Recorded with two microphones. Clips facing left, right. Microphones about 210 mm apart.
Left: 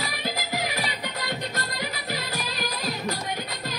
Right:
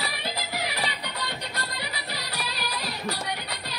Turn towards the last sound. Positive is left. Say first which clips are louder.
# left 3 dB
turn(degrees=45)  # may be behind; listen again after turning